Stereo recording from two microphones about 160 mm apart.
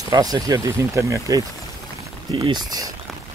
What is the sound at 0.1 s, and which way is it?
Speech, 25° right (ahead or behind).